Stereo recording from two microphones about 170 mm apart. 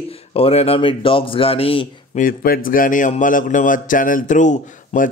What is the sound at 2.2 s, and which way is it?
A man's voice, 55° left (ahead or behind).